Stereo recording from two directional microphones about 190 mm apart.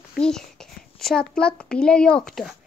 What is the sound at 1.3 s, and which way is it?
A child's voice, 5° left (ahead or behind).